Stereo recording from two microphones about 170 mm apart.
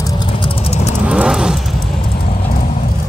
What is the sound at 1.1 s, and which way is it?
Vehicle, 5° right (ahead or behind).